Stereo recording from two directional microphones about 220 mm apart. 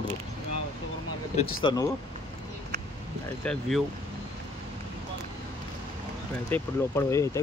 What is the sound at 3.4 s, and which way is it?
Speech, centre (ahead or behind).